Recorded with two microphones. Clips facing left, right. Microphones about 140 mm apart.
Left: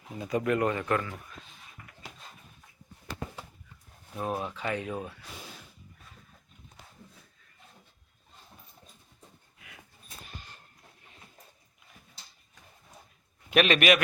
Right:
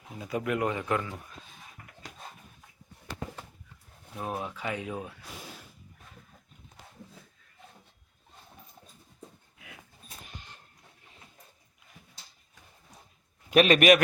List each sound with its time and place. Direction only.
0.1 s speech: centre (ahead or behind)
4.1 s speech: 5° right (ahead or behind)
13.5 s a man's voice: 40° right (ahead or behind)